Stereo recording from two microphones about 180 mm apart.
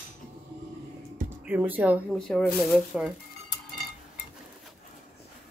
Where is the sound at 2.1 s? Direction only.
5° left (ahead or behind).